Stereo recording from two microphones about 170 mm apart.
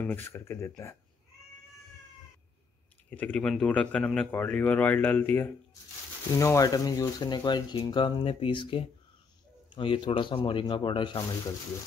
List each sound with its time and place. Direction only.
0.0 s speech: 15° left (ahead or behind)
3.1 s speech: 10° left (ahead or behind); by 11.2 s 30° left (ahead or behind)